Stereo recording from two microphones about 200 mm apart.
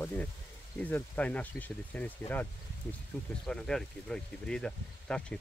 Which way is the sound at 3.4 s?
5° left (ahead or behind).